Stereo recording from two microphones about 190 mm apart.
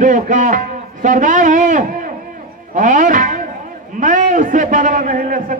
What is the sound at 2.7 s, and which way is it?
Music, 40° right (ahead or behind).